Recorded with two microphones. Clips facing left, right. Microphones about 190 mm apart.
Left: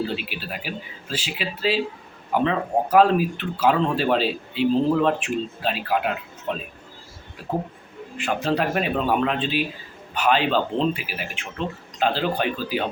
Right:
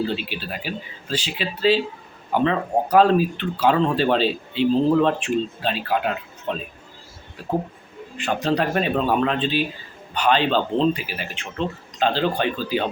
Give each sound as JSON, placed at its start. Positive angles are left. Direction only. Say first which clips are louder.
{"t": 0.1, "sound": "speech", "louder": "right 2 dB", "side_deg": 5}
{"t": 8.2, "sound": "speech", "louder": "right 1 dB", "side_deg": 5}